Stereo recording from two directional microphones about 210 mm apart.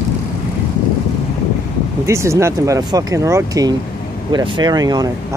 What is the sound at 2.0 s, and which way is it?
Speech, 15° right (ahead or behind).